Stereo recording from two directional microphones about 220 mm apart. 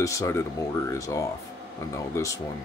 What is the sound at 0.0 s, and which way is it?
Speech, 15° left (ahead or behind).